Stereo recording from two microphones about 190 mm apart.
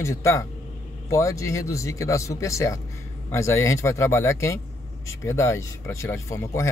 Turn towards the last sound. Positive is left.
turn(degrees=15)  # may be behind; listen again after turning